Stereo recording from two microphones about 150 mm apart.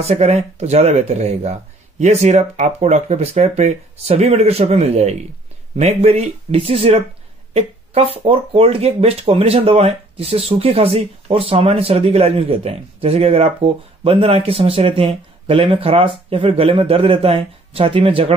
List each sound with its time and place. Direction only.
0.0 s speech: 45° right (ahead or behind)